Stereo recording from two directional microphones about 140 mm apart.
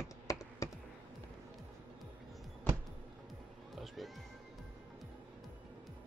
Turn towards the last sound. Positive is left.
turn(degrees=0)  # may be behind; listen again after turning